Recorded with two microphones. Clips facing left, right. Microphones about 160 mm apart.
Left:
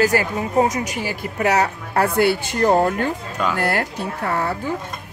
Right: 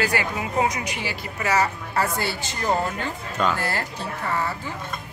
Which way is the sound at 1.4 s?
60° left (ahead or behind).